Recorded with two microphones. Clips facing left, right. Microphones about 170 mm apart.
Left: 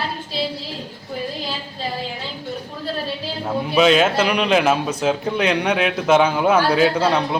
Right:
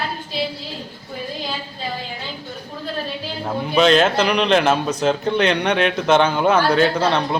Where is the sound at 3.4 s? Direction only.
5° left (ahead or behind).